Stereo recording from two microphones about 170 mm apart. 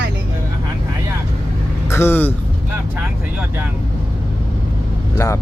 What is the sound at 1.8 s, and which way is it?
Speech, 15° left (ahead or behind).